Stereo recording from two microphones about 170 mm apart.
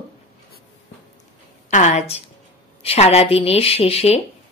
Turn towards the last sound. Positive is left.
turn(degrees=35)  # may be behind; listen again after turning